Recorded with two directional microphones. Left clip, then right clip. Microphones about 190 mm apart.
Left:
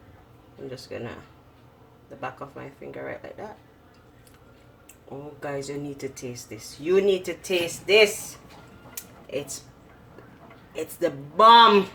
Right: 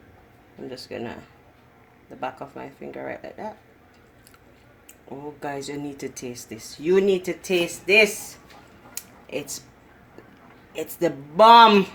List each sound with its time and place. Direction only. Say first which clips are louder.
0.7 s speech: right 2 dB; 50° right (ahead or behind)
2.9 s speech: right 1 dB; 50° right (ahead or behind)
5.4 s speech: even; 50° right (ahead or behind)
10.7 s speech: right 2 dB; 50° right (ahead or behind)